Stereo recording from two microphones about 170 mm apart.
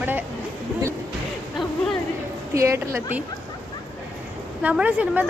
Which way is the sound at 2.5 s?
15° right (ahead or behind).